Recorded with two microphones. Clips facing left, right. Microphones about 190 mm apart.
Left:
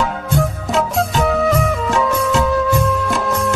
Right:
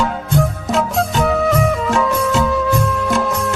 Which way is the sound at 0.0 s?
Centre (ahead or behind).